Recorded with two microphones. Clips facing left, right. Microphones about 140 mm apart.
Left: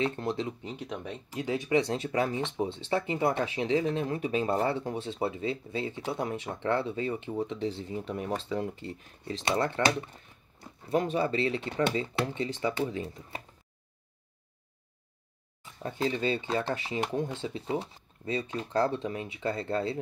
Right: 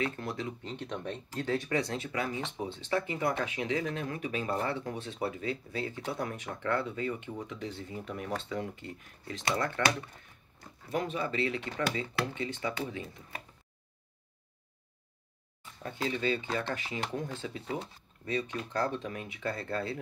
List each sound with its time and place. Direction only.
0.0 s speech: 30° left (ahead or behind)
0.6 s speech: 10° left (ahead or behind)
1.9 s speech: 35° left (ahead or behind)
10.9 s speech: 35° left (ahead or behind)
15.8 s speech: 30° left (ahead or behind)